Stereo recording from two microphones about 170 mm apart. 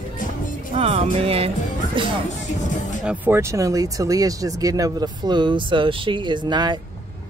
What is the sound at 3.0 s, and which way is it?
Speech, 10° right (ahead or behind).